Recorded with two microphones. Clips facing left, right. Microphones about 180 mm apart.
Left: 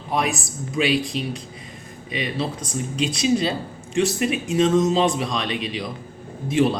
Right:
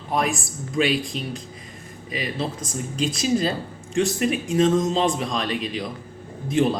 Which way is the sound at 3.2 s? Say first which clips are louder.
Left 2 dB; 45° right (ahead or behind).